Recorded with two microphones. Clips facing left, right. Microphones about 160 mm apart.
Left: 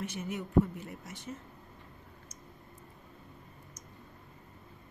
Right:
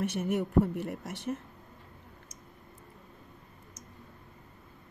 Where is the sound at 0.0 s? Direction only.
60° right (ahead or behind).